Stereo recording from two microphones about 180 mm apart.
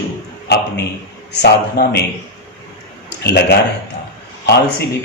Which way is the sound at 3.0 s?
65° left (ahead or behind).